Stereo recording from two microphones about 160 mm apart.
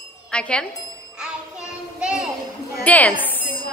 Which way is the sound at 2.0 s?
5° right (ahead or behind).